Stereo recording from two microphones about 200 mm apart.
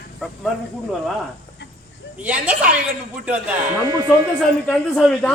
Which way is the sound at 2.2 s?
5° right (ahead or behind).